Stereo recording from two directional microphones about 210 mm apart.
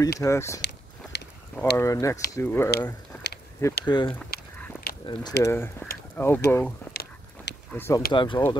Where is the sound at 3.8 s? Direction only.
20° left (ahead or behind).